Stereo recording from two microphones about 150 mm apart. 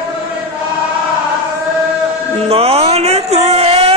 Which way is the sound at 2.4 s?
40° right (ahead or behind).